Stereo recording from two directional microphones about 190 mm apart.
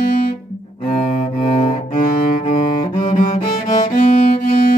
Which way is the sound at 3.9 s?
45° left (ahead or behind).